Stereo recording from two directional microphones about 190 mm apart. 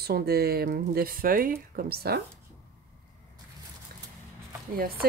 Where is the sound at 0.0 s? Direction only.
55° right (ahead or behind).